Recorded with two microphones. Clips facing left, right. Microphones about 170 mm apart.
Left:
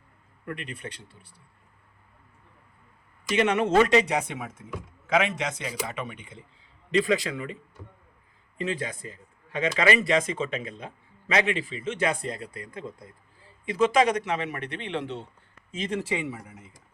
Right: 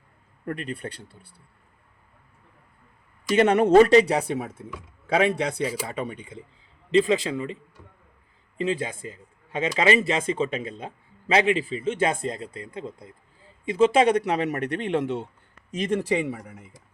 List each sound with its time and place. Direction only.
0.4 s speech: 40° right (ahead or behind)
3.3 s speech: 35° right (ahead or behind)
8.5 s speech: 30° right (ahead or behind)